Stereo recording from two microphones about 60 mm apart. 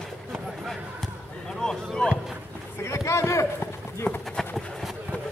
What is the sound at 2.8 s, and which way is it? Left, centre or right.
Clip-clop, left.